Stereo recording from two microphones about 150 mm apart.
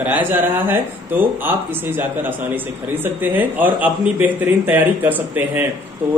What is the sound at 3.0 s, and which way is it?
A man's voice, 10° right (ahead or behind).